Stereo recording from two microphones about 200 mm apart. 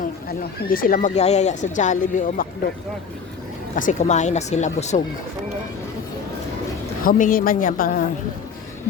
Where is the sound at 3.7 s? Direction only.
40° left (ahead or behind).